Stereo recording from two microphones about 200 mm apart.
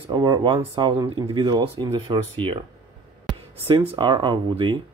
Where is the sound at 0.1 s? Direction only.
20° right (ahead or behind).